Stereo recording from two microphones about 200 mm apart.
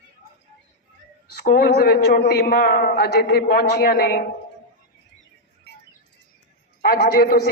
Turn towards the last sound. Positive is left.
turn(degrees=50)  # may be behind; listen again after turning